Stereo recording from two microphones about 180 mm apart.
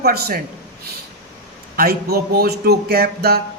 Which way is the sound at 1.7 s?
60° right (ahead or behind).